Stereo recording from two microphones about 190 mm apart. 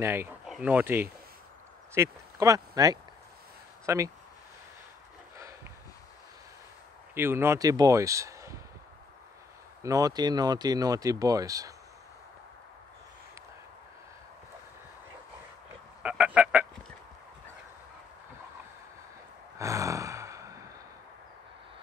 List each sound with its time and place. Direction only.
0.0 s speech: 15° right (ahead or behind)
5.4 s a sound: 15° right (ahead or behind)
7.2 s speech: 10° right (ahead or behind)
9.8 s speech: 20° right (ahead or behind)
16.0 s a sound: 5° right (ahead or behind)
19.6 s sigh: 15° right (ahead or behind)